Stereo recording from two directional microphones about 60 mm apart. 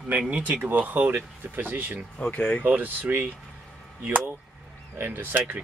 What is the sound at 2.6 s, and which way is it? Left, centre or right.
Speech, right.